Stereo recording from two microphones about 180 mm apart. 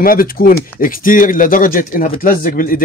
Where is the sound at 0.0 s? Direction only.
50° left (ahead or behind).